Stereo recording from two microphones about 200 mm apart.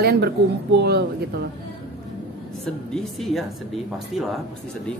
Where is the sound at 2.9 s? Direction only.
Centre (ahead or behind).